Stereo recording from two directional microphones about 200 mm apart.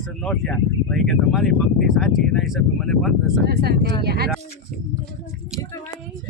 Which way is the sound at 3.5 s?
50° right (ahead or behind).